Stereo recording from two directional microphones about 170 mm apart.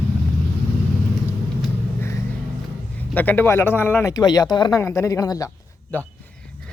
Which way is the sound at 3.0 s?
10° left (ahead or behind).